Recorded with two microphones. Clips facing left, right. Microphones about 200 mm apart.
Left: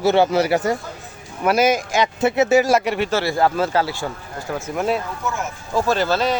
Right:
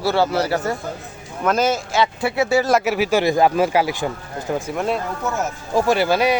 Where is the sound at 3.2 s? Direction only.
15° right (ahead or behind).